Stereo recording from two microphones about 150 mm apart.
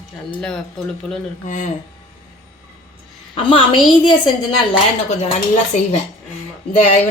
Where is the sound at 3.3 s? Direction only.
35° left (ahead or behind).